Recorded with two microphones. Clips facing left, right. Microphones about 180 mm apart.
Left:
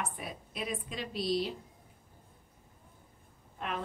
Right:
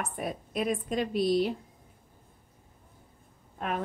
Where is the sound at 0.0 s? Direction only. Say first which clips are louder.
Right 6 dB; 45° right (ahead or behind).